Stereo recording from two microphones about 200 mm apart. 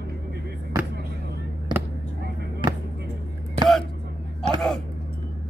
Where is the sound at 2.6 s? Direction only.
25° right (ahead or behind).